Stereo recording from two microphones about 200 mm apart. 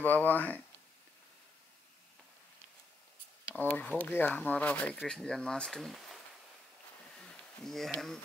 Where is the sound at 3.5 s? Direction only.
5° left (ahead or behind).